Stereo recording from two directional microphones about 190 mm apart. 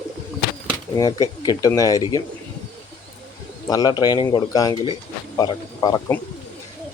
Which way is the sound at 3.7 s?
20° left (ahead or behind).